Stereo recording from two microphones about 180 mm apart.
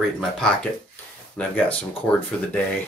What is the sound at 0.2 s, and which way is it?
Speech, 5° left (ahead or behind).